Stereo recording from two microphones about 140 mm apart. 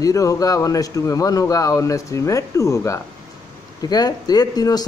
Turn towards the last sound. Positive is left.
turn(degrees=30)  # may be behind; listen again after turning